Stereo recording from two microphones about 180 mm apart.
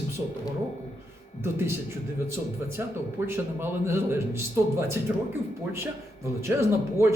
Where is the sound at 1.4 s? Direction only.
15° right (ahead or behind).